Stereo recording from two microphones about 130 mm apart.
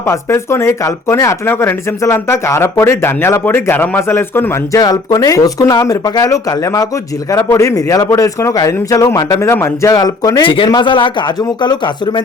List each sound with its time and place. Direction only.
0.1 s speech: 20° left (ahead or behind)
4.8 s speech: 30° left (ahead or behind)